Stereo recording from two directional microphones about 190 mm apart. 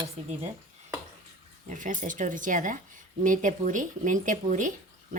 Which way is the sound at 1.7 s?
40° right (ahead or behind).